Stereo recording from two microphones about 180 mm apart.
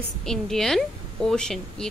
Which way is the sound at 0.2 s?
Centre (ahead or behind).